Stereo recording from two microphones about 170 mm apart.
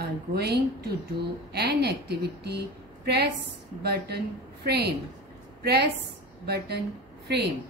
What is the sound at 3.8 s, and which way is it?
A woman's voice, 70° right (ahead or behind).